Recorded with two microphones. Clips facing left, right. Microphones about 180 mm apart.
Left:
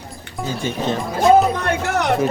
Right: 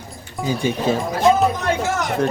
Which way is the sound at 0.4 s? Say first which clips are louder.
Right 3 dB; 15° right (ahead or behind).